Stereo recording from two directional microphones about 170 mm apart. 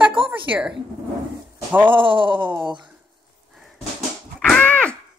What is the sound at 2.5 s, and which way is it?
Speech, 25° right (ahead or behind).